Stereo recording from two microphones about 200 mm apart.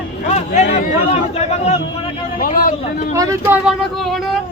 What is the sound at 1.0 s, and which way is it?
Chatter, 30° left (ahead or behind).